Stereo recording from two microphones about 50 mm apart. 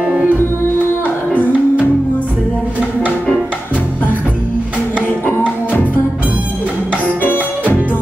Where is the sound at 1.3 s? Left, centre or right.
Left.